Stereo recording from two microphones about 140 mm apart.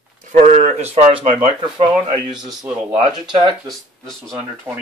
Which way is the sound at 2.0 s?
30° right (ahead or behind).